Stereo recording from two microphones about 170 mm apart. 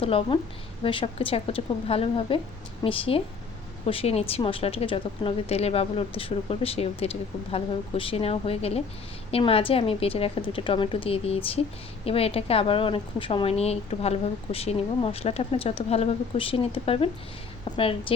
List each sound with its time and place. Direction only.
0.0 s a woman's voice: 35° left (ahead or behind)